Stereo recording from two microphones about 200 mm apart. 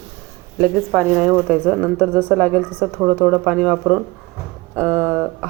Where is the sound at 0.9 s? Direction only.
5° left (ahead or behind).